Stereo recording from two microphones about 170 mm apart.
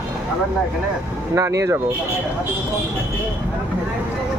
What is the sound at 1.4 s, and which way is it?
Speech, 15° right (ahead or behind).